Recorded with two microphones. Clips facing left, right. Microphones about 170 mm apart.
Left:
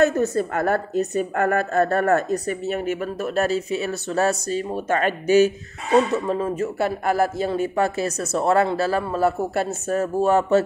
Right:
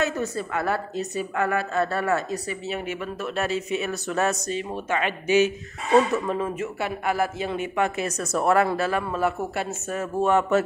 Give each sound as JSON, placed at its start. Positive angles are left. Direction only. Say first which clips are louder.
{"t": 0.0, "sound": "a woman's voice", "louder": "left 7 dB", "side_deg": 45}